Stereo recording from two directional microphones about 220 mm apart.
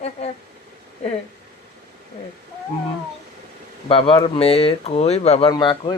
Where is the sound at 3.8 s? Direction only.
25° left (ahead or behind).